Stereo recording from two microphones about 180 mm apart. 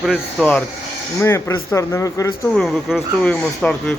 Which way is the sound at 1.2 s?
15° left (ahead or behind).